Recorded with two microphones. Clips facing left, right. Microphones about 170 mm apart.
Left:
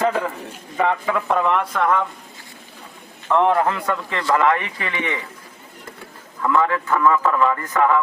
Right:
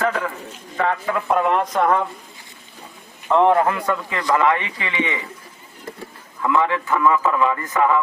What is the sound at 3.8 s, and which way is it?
Speech, centre (ahead or behind).